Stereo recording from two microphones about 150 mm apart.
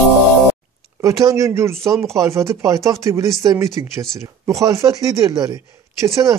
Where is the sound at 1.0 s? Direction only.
20° right (ahead or behind).